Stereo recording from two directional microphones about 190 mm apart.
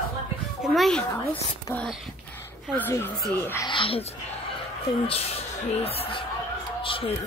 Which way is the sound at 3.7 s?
25° left (ahead or behind).